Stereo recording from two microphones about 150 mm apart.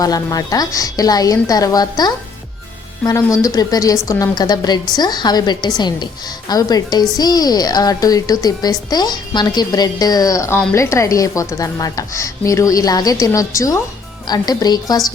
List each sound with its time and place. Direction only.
0.0 s a woman's voice: 25° left (ahead or behind)